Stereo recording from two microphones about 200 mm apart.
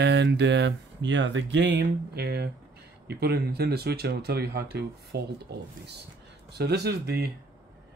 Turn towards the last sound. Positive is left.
turn(degrees=-55)  # may be behind; listen again after turning